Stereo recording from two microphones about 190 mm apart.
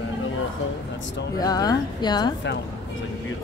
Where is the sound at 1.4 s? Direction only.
20° left (ahead or behind).